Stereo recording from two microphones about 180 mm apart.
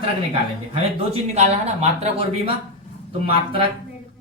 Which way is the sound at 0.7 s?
35° right (ahead or behind).